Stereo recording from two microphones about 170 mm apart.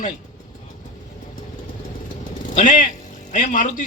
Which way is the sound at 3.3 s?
50° left (ahead or behind).